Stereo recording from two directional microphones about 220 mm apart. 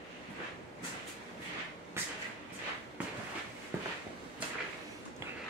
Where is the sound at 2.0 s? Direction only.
10° right (ahead or behind).